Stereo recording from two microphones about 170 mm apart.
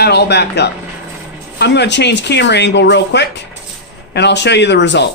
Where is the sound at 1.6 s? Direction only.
90° left.